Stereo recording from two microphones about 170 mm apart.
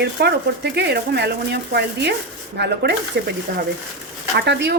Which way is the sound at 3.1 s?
90° right.